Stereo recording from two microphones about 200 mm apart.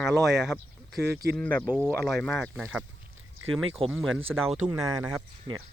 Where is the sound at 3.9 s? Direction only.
Centre (ahead or behind).